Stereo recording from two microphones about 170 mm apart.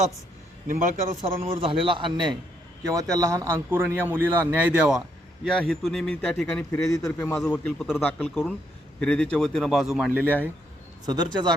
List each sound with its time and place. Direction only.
0.7 s a man's voice: 45° right (ahead or behind)
1.2 s a man's voice: 35° right (ahead or behind); by 6.7 s 5° left (ahead or behind)
6.7 s a man's voice: 20° left (ahead or behind); by 10.3 s 5° right (ahead or behind)
11.0 s speech: 25° right (ahead or behind)